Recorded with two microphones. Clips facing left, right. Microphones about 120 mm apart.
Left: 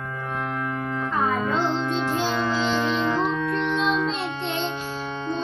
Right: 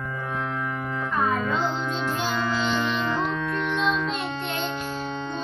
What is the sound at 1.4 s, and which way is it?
Music, 25° left (ahead or behind).